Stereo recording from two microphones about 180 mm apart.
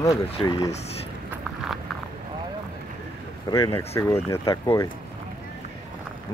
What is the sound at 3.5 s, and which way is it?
Speech, 20° left (ahead or behind).